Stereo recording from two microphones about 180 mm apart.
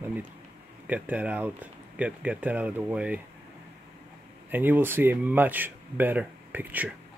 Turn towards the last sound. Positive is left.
turn(degrees=-10)  # may be behind; listen again after turning